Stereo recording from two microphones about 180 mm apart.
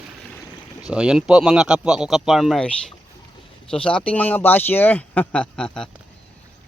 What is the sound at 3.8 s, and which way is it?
A man's voice, 5° left (ahead or behind).